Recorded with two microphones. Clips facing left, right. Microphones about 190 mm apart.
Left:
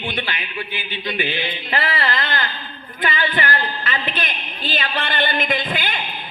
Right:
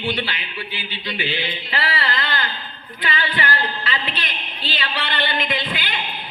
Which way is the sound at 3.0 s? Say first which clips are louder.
Left 3 dB; 50° left (ahead or behind).